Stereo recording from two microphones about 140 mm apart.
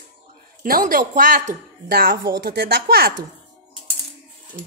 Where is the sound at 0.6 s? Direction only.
85° right.